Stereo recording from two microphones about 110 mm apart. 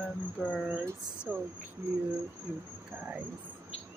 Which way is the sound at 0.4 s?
10° right (ahead or behind).